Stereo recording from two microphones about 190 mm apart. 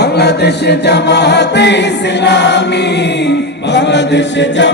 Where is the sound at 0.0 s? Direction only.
60° left (ahead or behind).